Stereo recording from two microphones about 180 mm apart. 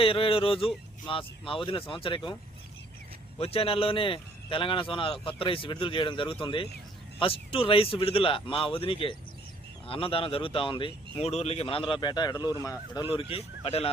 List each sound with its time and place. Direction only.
0.0 s speech: 30° left (ahead or behind)
3.3 s speech: 30° left (ahead or behind)
13.1 s speech: 35° left (ahead or behind)